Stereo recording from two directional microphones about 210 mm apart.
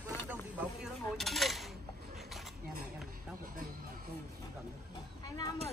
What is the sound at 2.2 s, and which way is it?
Cutlery, centre (ahead or behind).